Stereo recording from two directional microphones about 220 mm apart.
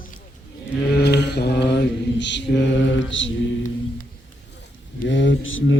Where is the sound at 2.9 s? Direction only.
60° left (ahead or behind).